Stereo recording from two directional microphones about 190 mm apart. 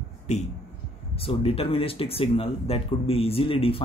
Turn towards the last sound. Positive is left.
turn(degrees=30)  # may be behind; listen again after turning